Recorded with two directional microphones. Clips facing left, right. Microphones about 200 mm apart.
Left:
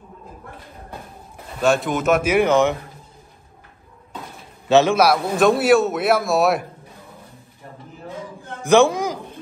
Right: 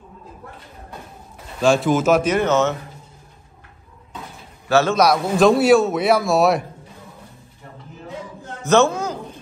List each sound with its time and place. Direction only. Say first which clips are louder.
1.6 s a man's voice: right 3 dB; centre (ahead or behind)
2.3 s speech: left 2 dB; 15° left (ahead or behind)
4.6 s a man's voice: left 2 dB; 20° left (ahead or behind)
4.9 s a man's voice: right 1 dB; 5° left (ahead or behind)
8.6 s a man's voice: left 1 dB; 15° left (ahead or behind)